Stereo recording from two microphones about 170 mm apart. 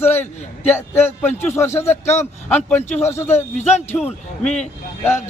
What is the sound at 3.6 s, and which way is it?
Speech, 40° left (ahead or behind).